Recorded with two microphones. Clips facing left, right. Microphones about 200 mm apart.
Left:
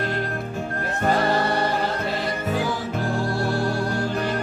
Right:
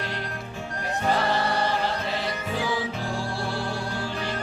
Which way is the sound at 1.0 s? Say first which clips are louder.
Left 4 dB; 45° left (ahead or behind).